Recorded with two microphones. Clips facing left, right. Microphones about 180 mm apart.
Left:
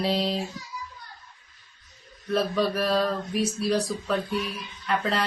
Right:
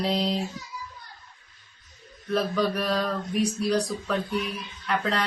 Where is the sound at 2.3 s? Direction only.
Centre (ahead or behind).